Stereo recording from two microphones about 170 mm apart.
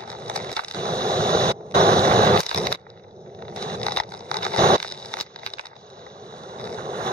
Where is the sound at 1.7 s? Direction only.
65° right (ahead or behind).